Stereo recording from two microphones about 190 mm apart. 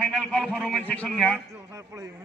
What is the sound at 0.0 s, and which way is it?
A man's voice, 5° left (ahead or behind).